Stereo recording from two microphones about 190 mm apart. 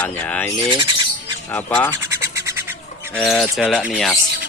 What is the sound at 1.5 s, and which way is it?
Speech, 10° left (ahead or behind).